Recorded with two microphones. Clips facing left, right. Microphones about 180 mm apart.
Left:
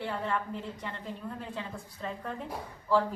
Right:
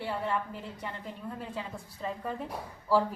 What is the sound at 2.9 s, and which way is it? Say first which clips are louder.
Speech: right 1 dB; 10° right (ahead or behind).